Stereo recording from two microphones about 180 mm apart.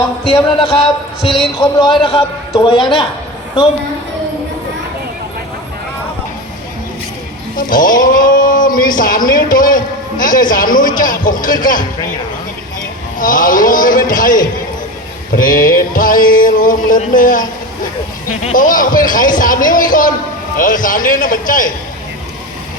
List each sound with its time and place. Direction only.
0.6 s a man's voice: 30° left (ahead or behind)
7.5 s speech: 50° left (ahead or behind)
13.1 s speech: 50° left (ahead or behind)
18.5 s speech: 50° left (ahead or behind)